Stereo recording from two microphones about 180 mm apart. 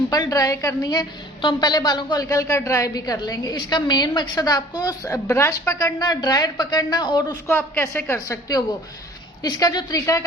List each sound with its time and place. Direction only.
0.1 s a woman's voice: 20° left (ahead or behind)